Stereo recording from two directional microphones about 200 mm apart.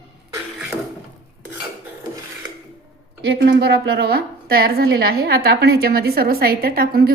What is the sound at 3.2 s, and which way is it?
A woman's voice, 55° right (ahead or behind).